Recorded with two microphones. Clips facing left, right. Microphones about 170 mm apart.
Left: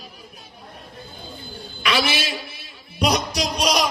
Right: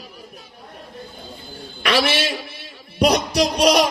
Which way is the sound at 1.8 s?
55° right (ahead or behind).